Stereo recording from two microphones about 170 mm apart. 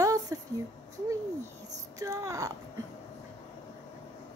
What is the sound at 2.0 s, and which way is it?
Speech, 20° right (ahead or behind).